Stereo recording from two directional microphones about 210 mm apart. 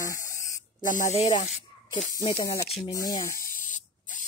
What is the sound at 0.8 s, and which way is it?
Speech, 40° left (ahead or behind).